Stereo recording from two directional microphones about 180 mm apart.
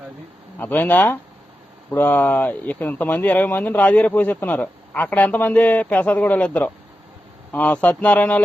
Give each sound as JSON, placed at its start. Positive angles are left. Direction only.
{"t": 0.6, "sound": "speech", "side_deg": 10}